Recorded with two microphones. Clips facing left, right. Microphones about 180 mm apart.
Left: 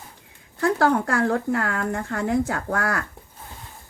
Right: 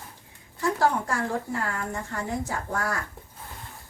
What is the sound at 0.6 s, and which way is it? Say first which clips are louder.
Speech: left 4 dB; 60° left (ahead or behind).